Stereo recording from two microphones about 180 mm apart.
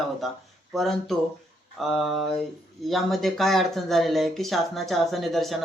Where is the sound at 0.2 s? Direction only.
Centre (ahead or behind).